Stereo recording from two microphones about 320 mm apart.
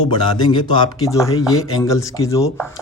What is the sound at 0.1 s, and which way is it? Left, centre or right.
A man's voice, centre.